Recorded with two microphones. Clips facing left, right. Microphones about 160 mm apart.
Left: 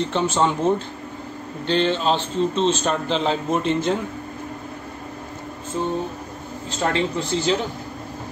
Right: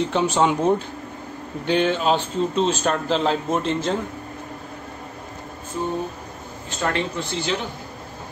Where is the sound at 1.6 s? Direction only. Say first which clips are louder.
Even; 10° right (ahead or behind).